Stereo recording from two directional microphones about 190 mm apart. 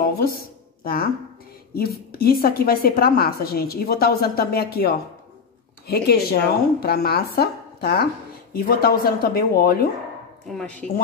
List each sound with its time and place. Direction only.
0.4 s a sound: 50° left (ahead or behind)
1.7 s a woman's voice: 55° left (ahead or behind)
10.5 s speech: 5° left (ahead or behind)